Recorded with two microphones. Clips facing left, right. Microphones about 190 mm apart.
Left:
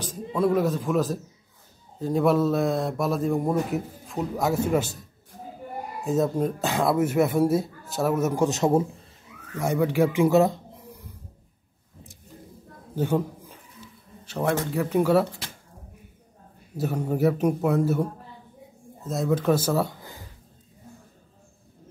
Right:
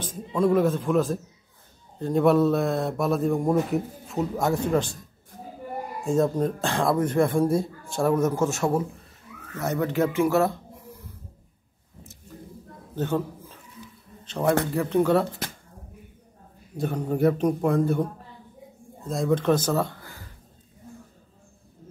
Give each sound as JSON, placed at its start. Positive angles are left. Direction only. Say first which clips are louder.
{"t": 0.3, "sound": "speech", "louder": "right 1 dB", "side_deg": 5}
{"t": 6.0, "sound": "speech", "louder": "right 1 dB", "side_deg": 5}
{"t": 12.9, "sound": "a sound", "louder": "left 2 dB", "side_deg": 10}
{"t": 14.2, "sound": "speech", "louder": "right 2 dB", "side_deg": 10}
{"t": 16.7, "sound": "speech", "louder": "even", "side_deg": 5}
{"t": 19.0, "sound": "speech", "louder": "right 1 dB", "side_deg": 5}